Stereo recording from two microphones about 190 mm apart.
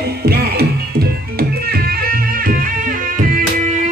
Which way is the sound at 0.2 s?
55° right (ahead or behind).